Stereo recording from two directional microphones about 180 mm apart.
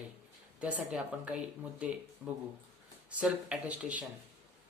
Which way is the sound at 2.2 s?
15° right (ahead or behind).